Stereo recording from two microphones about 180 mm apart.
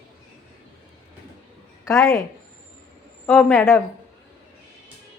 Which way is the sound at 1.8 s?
15° left (ahead or behind).